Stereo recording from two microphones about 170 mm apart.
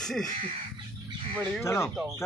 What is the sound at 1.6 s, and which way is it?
Speech, 15° left (ahead or behind).